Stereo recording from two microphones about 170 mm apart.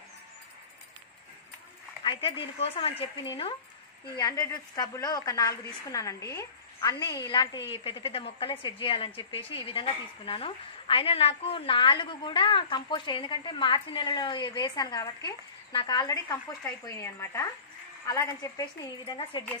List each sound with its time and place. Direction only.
2.0 s a woman's voice: 30° left (ahead or behind)